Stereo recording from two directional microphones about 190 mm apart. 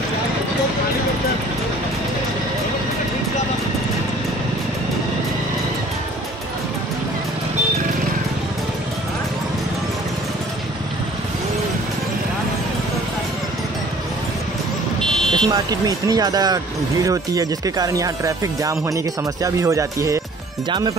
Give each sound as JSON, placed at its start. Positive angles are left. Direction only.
{"t": 15.0, "sound": "car alarm", "side_deg": 5}
{"t": 15.5, "sound": "speech", "side_deg": -20}